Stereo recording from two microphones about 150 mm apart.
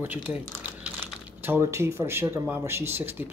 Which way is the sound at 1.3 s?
15° right (ahead or behind).